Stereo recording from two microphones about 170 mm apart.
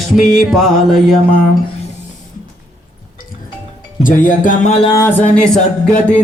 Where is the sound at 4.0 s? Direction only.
50° left (ahead or behind).